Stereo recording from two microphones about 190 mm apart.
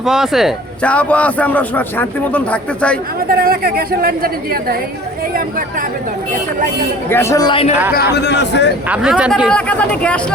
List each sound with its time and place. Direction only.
0.0 s a man's voice: centre (ahead or behind)
3.2 s a woman's voice: 50° right (ahead or behind)
7.1 s speech: 15° left (ahead or behind); by 7.8 s 30° left (ahead or behind)
8.1 s a man's voice: 65° left (ahead or behind)
8.9 s speech: 5° right (ahead or behind)
9.5 s a man's voice: 5° left (ahead or behind)